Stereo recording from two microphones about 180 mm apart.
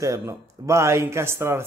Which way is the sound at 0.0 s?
15° right (ahead or behind).